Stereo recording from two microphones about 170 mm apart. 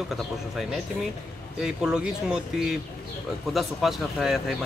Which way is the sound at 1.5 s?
5° right (ahead or behind).